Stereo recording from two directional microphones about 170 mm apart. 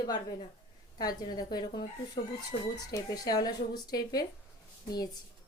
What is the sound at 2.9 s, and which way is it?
A woman's voice, 20° left (ahead or behind).